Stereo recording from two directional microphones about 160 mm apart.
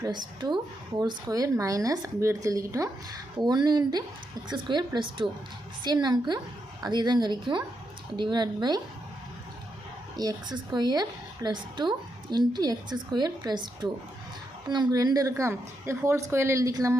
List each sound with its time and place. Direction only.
0.3 s a woman's voice: 25° right (ahead or behind)
10.2 s a woman's voice: 25° right (ahead or behind)